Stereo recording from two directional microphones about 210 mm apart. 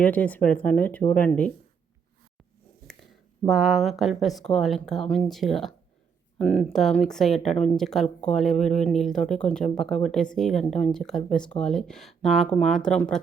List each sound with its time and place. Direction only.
0.0 s speech: 5° left (ahead or behind)
3.4 s speech: centre (ahead or behind)
8.5 s speech: 35° left (ahead or behind)
8.8 s speech: centre (ahead or behind)